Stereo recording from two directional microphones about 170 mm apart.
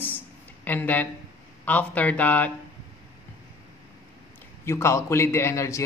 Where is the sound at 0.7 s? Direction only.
10° left (ahead or behind).